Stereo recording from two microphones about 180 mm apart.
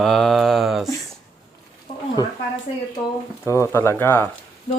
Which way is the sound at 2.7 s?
35° left (ahead or behind).